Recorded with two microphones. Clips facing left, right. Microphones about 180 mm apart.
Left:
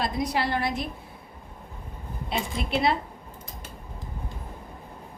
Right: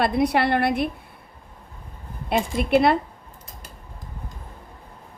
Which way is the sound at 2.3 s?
55° right (ahead or behind).